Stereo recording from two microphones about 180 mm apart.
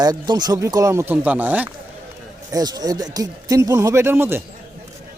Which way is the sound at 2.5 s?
20° right (ahead or behind).